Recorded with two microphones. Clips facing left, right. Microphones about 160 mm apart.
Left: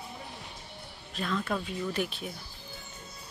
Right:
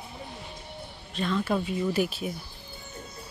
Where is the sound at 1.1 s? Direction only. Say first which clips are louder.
Right 4 dB; centre (ahead or behind).